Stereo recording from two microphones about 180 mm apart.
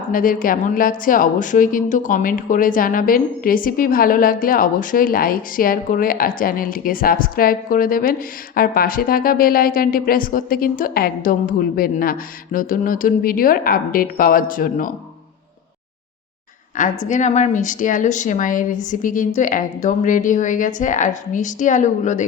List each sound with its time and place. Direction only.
0.1 s a woman's voice: 50° left (ahead or behind)
17.0 s a woman's voice: 45° left (ahead or behind)